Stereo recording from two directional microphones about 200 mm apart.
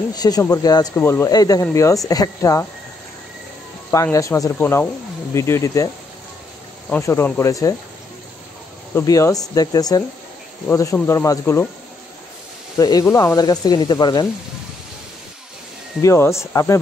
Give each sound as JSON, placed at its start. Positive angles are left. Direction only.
{"t": 0.1, "sound": "speech", "side_deg": 20}
{"t": 3.9, "sound": "speech", "side_deg": 15}
{"t": 6.9, "sound": "speech", "side_deg": 10}
{"t": 8.9, "sound": "speech", "side_deg": 15}
{"t": 12.7, "sound": "speech", "side_deg": 20}
{"t": 16.0, "sound": "speech", "side_deg": 15}